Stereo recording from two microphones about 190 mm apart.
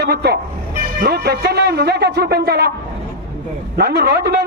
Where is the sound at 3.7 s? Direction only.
55° right (ahead or behind).